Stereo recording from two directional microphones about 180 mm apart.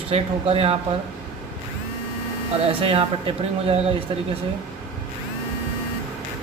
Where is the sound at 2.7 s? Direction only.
30° right (ahead or behind).